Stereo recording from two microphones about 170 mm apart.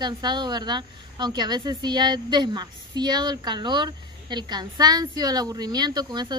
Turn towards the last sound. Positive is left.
turn(degrees=-25)  # may be behind; listen again after turning